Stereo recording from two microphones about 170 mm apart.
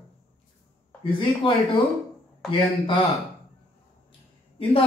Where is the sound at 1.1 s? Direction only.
30° left (ahead or behind).